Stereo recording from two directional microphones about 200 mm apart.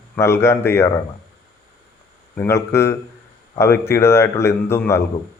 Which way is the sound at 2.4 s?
15° left (ahead or behind).